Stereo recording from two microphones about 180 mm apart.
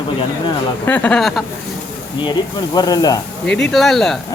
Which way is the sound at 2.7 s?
20° left (ahead or behind).